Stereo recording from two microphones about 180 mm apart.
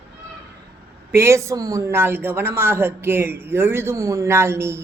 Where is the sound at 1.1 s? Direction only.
15° right (ahead or behind).